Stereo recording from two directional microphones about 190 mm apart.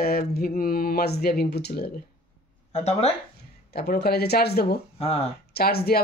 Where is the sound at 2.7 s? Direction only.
35° left (ahead or behind).